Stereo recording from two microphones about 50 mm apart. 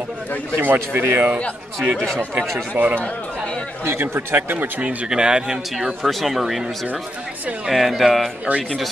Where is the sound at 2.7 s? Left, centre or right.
Right.